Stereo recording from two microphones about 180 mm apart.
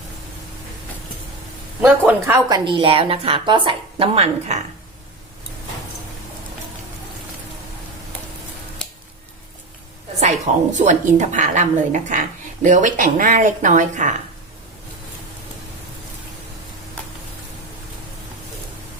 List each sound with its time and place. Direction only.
1.8 s a woman's voice: 15° right (ahead or behind)
2.6 s a woman's voice: 30° right (ahead or behind)
10.2 s a woman's voice: 40° right (ahead or behind)